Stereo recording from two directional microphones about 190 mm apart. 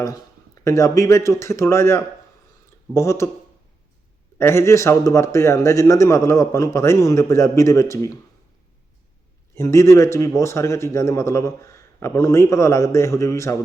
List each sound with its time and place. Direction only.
0.6 s a man's voice: 15° left (ahead or behind)
4.4 s a man's voice: 15° left (ahead or behind)
9.6 s a man's voice: 15° left (ahead or behind)